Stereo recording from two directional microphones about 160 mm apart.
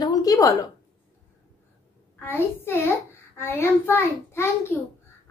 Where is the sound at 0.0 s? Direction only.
20° left (ahead or behind).